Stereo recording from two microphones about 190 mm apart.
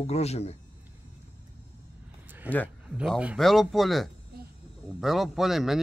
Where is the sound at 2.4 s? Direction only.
5° right (ahead or behind).